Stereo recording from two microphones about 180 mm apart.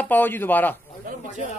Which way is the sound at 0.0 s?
10° left (ahead or behind).